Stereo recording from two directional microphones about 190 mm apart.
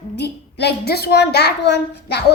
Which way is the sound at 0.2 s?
60° left (ahead or behind).